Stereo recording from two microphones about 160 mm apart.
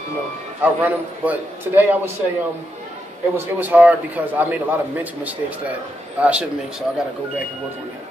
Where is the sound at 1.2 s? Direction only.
10° right (ahead or behind).